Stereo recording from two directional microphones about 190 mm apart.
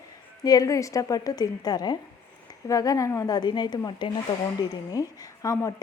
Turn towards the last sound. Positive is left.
turn(degrees=15)  # may be behind; listen again after turning